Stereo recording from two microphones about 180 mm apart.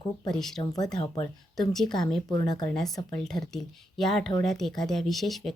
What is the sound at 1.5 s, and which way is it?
Speech, centre (ahead or behind).